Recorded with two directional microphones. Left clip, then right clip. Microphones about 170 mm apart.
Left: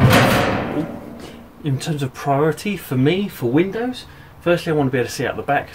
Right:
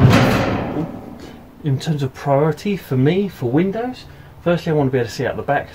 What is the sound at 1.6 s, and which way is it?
Speech, centre (ahead or behind).